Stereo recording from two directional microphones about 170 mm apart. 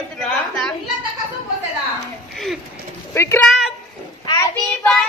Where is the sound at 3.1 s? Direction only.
15° left (ahead or behind).